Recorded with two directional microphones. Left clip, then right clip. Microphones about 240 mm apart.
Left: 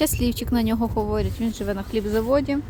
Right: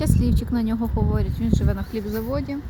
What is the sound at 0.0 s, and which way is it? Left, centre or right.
Speech, centre.